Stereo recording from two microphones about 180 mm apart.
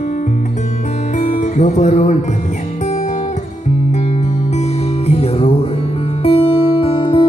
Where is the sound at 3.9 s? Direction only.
40° left (ahead or behind).